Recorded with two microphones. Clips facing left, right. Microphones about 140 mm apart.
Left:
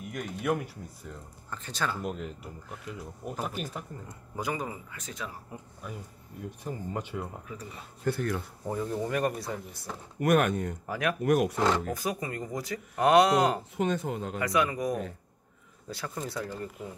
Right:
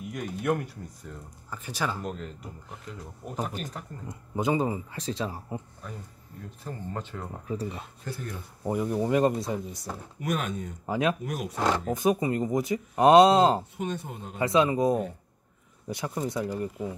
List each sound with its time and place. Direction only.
0.1 s speech: centre (ahead or behind)
1.5 s speech: 10° right (ahead or behind)
2.0 s speech: 5° left (ahead or behind)
4.4 s speech: 25° right (ahead or behind)
5.8 s speech: 10° left (ahead or behind)
7.4 s speech: 30° right (ahead or behind)
8.0 s speech: 65° left (ahead or behind)
8.6 s speech: 15° right (ahead or behind)
10.1 s speech: 60° left (ahead or behind)
10.9 s speech: 20° right (ahead or behind)
11.2 s speech: 65° left (ahead or behind)
11.8 s speech: 20° right (ahead or behind)
13.7 s speech: 90° left
14.4 s speech: 25° right (ahead or behind)